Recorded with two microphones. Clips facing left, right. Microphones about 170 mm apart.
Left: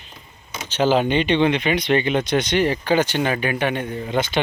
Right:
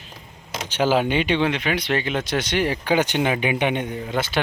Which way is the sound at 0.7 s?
10° right (ahead or behind).